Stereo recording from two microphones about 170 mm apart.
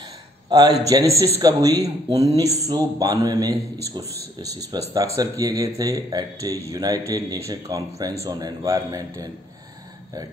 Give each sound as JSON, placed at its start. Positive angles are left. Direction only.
{"t": 0.5, "sound": "a man's voice", "side_deg": -25}